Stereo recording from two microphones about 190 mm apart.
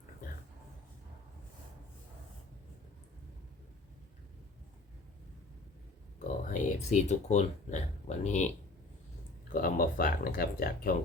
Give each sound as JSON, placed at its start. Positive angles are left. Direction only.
{"t": 6.5, "sound": "speech", "side_deg": 40}
{"t": 9.5, "sound": "speech", "side_deg": 45}